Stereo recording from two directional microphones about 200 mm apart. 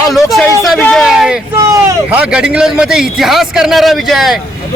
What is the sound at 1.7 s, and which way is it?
A man's voice, 15° right (ahead or behind).